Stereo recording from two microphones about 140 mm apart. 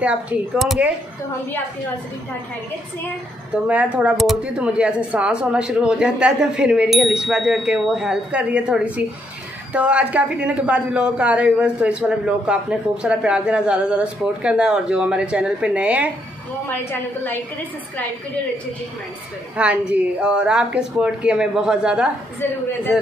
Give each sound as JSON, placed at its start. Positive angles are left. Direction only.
{"t": 0.0, "sound": "a woman's voice", "side_deg": -10}
{"t": 3.6, "sound": "a woman's voice", "side_deg": -10}
{"t": 19.5, "sound": "a woman's voice", "side_deg": -10}